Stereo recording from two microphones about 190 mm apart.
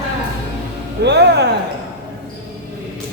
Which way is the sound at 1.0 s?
60° right (ahead or behind).